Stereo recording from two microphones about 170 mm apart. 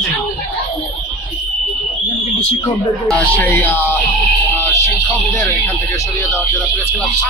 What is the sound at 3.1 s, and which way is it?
Speech, 10° left (ahead or behind).